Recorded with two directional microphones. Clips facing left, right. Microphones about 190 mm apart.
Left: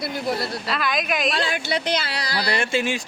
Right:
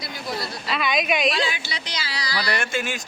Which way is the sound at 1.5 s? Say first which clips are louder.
Left 10 dB; 55° left (ahead or behind).